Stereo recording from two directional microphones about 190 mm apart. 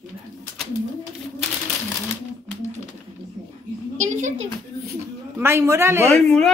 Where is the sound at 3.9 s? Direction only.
40° right (ahead or behind).